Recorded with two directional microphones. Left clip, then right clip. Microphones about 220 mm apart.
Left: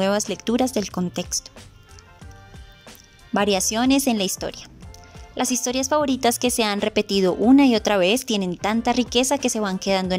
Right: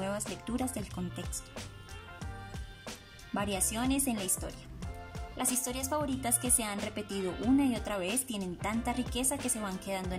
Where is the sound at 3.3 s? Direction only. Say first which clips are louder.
Left 14 dB; 40° left (ahead or behind).